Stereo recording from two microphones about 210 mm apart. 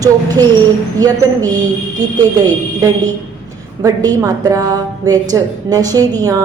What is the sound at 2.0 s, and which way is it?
A woman's voice, 15° right (ahead or behind).